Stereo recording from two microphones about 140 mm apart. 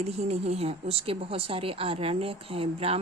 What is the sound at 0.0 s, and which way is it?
A woman's voice, 50° right (ahead or behind).